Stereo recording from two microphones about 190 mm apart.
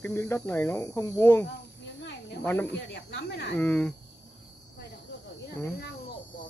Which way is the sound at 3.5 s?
5° left (ahead or behind).